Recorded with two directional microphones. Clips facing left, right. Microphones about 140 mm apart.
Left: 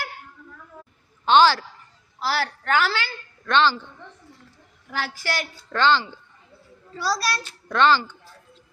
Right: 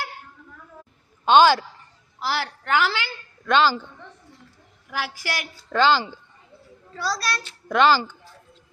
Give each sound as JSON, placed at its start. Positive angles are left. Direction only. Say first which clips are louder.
{"t": 1.2, "sound": "a woman's voice", "louder": "right 1 dB", "side_deg": -15}
{"t": 4.9, "sound": "a woman's voice", "louder": "left 1 dB", "side_deg": -10}
{"t": 7.0, "sound": "a child's voice", "louder": "left 2 dB", "side_deg": 0}
{"t": 7.7, "sound": "a woman's voice", "louder": "right 1 dB", "side_deg": -10}